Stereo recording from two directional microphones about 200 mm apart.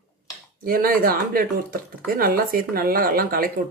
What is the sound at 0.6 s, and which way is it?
Speech, 45° right (ahead or behind).